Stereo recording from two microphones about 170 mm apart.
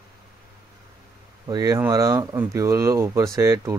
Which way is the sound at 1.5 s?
20° right (ahead or behind).